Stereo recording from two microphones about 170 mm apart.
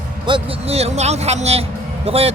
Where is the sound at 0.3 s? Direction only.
35° right (ahead or behind).